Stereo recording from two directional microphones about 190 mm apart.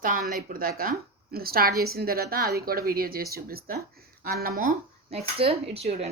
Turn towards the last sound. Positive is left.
turn(degrees=-35)  # may be behind; listen again after turning